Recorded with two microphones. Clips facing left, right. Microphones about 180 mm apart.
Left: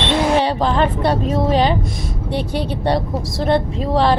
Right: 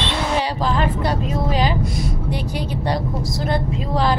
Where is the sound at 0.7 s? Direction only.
25° left (ahead or behind).